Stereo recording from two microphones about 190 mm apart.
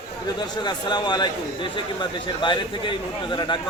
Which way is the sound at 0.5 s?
25° left (ahead or behind).